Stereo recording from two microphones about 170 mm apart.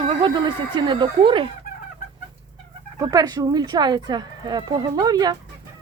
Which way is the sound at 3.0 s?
20° right (ahead or behind).